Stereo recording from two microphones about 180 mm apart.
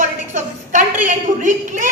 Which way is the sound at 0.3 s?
40° right (ahead or behind).